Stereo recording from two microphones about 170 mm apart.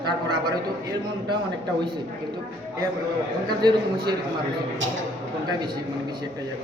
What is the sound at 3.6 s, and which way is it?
Speech, 25° right (ahead or behind).